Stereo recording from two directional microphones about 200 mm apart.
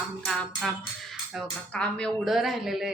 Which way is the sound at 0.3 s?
Centre (ahead or behind).